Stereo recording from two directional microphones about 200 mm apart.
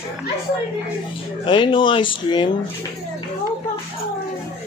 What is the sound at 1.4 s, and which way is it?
Speech, 25° left (ahead or behind).